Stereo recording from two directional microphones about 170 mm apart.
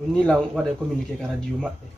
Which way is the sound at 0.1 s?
5° left (ahead or behind).